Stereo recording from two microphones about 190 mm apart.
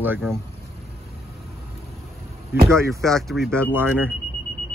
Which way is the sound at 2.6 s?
15° right (ahead or behind).